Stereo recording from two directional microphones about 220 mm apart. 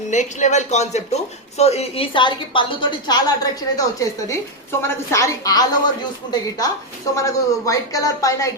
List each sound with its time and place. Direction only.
0.1 s speech: 35° left (ahead or behind); by 5.9 s 15° left (ahead or behind)
7.2 s speech: 15° left (ahead or behind)